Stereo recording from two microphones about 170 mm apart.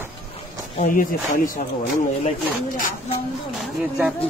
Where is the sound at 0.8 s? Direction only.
55° left (ahead or behind).